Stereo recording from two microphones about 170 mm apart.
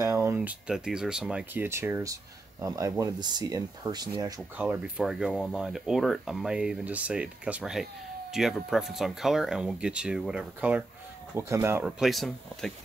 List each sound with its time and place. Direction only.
0.0 s speech: 15° right (ahead or behind)
4.4 s speech: 10° right (ahead or behind)
12.0 s speech: centre (ahead or behind)